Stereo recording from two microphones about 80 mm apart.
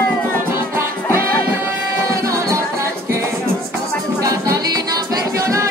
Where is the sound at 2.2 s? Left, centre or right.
Right.